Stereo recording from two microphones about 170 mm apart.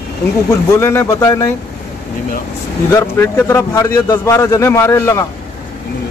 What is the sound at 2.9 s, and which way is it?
Speech, 20° left (ahead or behind).